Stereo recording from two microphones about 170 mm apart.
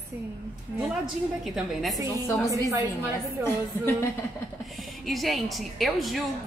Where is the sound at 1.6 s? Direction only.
Centre (ahead or behind).